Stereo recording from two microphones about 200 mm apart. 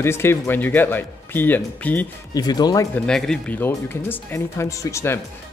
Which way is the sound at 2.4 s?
20° left (ahead or behind).